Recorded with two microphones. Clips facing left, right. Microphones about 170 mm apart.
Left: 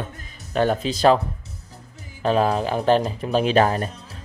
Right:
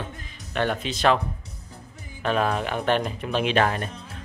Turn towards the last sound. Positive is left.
turn(degrees=35)  # may be behind; listen again after turning